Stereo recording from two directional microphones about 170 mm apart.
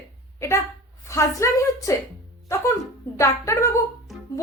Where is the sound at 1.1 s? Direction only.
15° left (ahead or behind).